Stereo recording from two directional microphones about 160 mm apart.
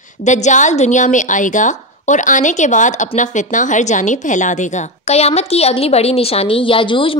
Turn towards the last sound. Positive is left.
turn(degrees=30)  # may be behind; listen again after turning